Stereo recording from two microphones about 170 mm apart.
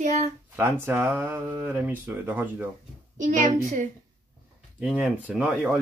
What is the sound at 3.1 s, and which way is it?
Speech, 50° right (ahead or behind).